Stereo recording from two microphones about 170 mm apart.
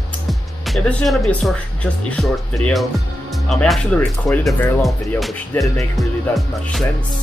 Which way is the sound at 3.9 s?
10° left (ahead or behind).